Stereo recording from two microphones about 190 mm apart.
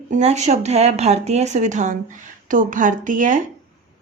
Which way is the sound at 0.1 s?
35° right (ahead or behind).